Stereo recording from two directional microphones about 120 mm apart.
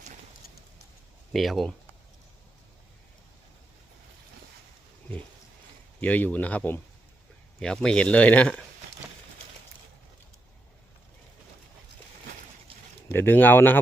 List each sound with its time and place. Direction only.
1.3 s speech: centre (ahead or behind)
6.0 s speech: 15° left (ahead or behind)
13.1 s speech: 20° left (ahead or behind)